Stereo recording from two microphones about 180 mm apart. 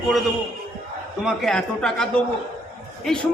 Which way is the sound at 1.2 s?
5° left (ahead or behind).